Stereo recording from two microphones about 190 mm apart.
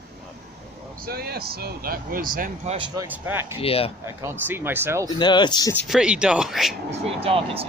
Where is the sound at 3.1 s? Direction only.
10° right (ahead or behind).